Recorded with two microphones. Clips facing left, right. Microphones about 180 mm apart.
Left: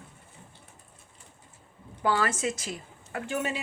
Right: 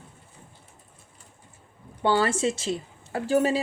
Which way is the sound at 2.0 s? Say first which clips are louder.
Right 4 dB; 30° right (ahead or behind).